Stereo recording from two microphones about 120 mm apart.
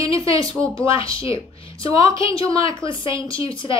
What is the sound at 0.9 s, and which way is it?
Speech, 50° left (ahead or behind).